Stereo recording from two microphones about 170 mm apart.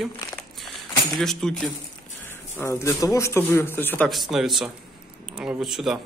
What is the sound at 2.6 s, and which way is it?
Speech, 15° left (ahead or behind).